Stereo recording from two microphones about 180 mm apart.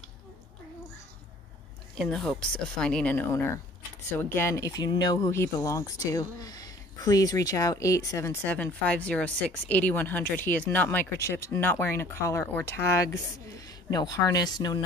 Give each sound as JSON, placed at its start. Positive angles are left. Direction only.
{"t": 2.0, "sound": "speech", "side_deg": 5}